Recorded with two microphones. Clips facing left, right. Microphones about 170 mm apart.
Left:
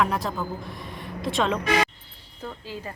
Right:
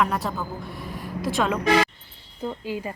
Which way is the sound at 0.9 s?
Centre (ahead or behind).